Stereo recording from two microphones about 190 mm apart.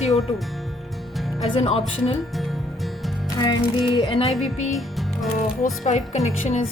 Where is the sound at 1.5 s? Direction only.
30° left (ahead or behind).